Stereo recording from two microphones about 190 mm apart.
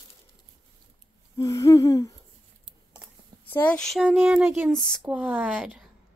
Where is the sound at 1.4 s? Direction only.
15° left (ahead or behind).